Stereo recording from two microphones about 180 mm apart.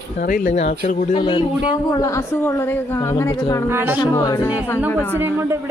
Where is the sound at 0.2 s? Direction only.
50° left (ahead or behind).